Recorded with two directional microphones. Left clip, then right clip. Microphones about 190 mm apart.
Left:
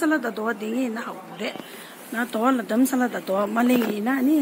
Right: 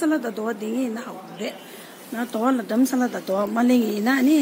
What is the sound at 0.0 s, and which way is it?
Speech, centre (ahead or behind).